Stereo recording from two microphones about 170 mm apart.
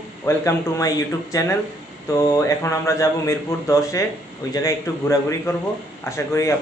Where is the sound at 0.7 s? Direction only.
20° left (ahead or behind).